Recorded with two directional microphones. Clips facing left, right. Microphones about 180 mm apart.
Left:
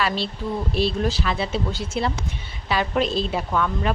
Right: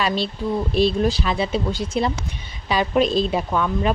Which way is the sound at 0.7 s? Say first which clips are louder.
Right 4 dB; 15° right (ahead or behind).